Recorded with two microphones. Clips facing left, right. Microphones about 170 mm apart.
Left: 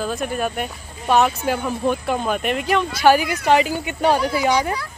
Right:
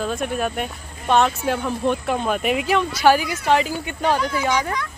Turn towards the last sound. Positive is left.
turn(degrees=35)  # may be behind; listen again after turning